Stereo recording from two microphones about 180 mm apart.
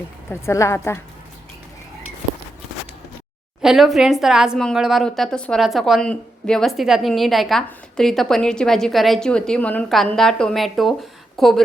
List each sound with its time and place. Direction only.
0.3 s a woman's voice: 15° left (ahead or behind)
3.6 s a woman's voice: centre (ahead or behind)